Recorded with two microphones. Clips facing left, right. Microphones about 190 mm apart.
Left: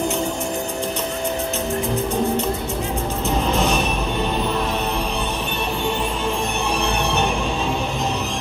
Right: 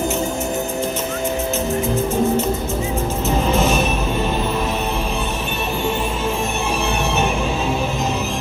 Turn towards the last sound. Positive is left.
turn(degrees=-5)  # may be behind; listen again after turning